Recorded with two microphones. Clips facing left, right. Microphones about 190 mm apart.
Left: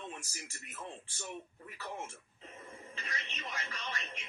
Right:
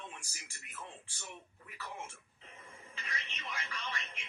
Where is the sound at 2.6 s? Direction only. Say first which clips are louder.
Left 4 dB; 35° left (ahead or behind).